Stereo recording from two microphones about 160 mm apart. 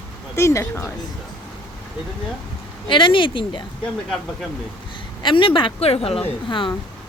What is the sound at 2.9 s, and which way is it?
Speech, 30° left (ahead or behind).